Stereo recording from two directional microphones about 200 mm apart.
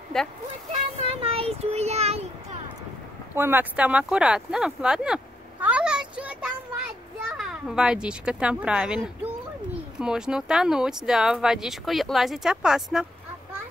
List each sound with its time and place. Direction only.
0.1 s speech: 5° left (ahead or behind)
0.9 s speech: 30° right (ahead or behind)
3.3 s a child's voice: 10° right (ahead or behind)